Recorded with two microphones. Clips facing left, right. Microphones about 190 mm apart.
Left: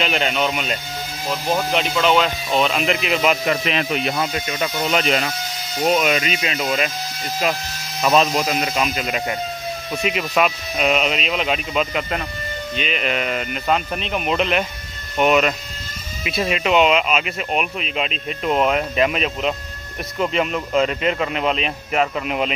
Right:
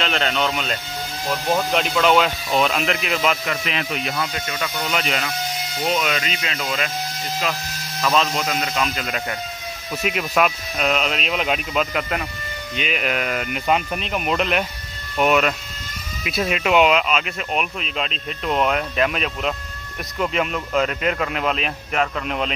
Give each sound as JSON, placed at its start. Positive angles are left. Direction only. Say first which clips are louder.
{"t": 0.0, "sound": "speech", "louder": "left 1 dB", "side_deg": 10}
{"t": 3.4, "sound": "speech", "louder": "left 5 dB", "side_deg": 35}
{"t": 4.0, "sound": "speech", "louder": "left 3 dB", "side_deg": 25}
{"t": 5.9, "sound": "speech", "louder": "left 4 dB", "side_deg": 15}
{"t": 8.0, "sound": "speech", "louder": "left 4 dB", "side_deg": 20}
{"t": 10.0, "sound": "speech", "louder": "even", "side_deg": 0}